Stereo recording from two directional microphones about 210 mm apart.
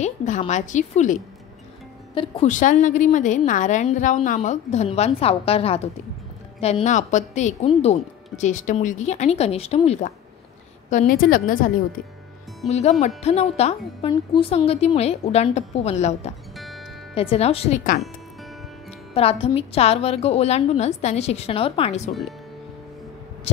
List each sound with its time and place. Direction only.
0.0 s a woman's voice: 35° left (ahead or behind)
16.5 s music: centre (ahead or behind)
17.1 s a woman's voice: 30° left (ahead or behind)
19.4 s a woman's voice: 30° left (ahead or behind)